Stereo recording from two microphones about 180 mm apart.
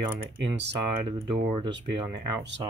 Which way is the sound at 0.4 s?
75° right (ahead or behind).